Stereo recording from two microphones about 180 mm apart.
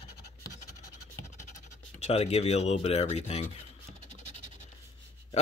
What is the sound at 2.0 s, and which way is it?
Speech, 35° left (ahead or behind).